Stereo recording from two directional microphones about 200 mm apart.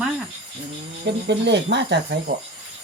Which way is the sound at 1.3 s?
60° right (ahead or behind).